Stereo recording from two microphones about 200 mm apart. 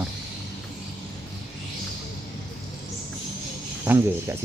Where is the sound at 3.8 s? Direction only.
10° right (ahead or behind).